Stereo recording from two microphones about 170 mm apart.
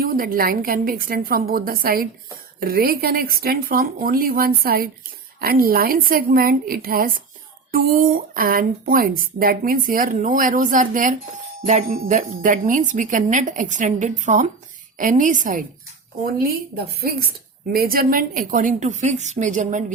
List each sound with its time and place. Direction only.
0.0 s a woman's voice: 60° right (ahead or behind)
16.2 s a woman's voice: 60° right (ahead or behind)